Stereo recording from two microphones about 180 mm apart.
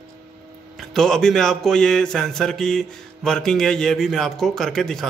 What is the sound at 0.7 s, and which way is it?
Speech, 5° left (ahead or behind).